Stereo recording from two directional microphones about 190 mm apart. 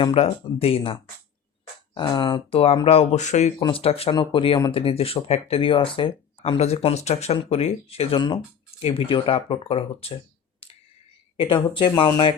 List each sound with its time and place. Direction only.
0.0 s speech: 30° left (ahead or behind)
2.0 s speech: 25° left (ahead or behind)
11.3 s speech: 25° left (ahead or behind)